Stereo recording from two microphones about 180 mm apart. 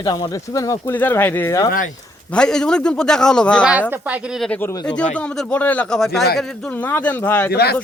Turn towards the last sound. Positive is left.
turn(degrees=60)  # may be behind; listen again after turning